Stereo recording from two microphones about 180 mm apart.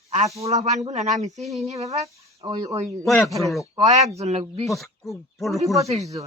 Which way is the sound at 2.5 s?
20° right (ahead or behind).